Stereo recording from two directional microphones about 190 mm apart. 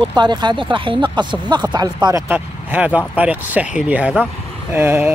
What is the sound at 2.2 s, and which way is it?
Speech, 10° right (ahead or behind).